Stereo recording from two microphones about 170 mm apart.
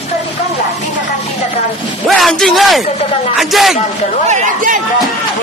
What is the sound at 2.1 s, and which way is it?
A man's voice, centre (ahead or behind).